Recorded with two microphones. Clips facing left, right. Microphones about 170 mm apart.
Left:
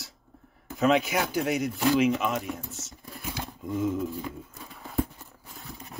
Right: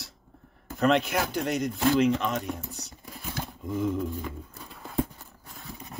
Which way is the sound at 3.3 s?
5° left (ahead or behind).